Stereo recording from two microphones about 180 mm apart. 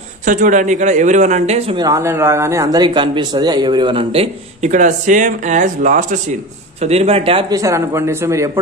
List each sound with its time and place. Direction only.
0.2 s a man's voice: 45° right (ahead or behind)
1.8 s speech: 20° right (ahead or behind)